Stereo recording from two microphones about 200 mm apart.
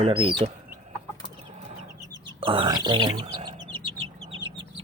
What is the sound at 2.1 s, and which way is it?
Bird, 25° right (ahead or behind).